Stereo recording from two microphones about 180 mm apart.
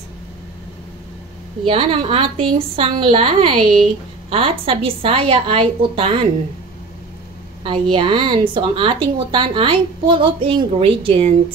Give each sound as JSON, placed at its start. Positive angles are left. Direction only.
{"t": 1.7, "sound": "a woman's voice", "side_deg": -30}
{"t": 7.9, "sound": "speech", "side_deg": -25}